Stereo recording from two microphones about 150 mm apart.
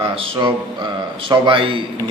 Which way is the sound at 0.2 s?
30° right (ahead or behind).